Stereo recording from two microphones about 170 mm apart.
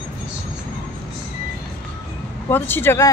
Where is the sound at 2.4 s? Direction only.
15° left (ahead or behind).